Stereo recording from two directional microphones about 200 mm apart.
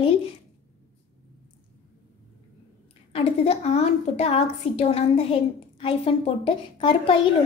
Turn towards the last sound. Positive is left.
turn(degrees=25)  # may be behind; listen again after turning